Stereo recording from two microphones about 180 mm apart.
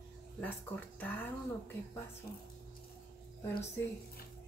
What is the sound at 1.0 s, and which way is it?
Speech, 10° left (ahead or behind).